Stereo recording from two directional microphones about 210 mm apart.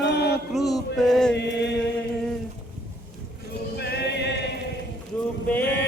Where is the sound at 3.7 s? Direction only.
50° left (ahead or behind).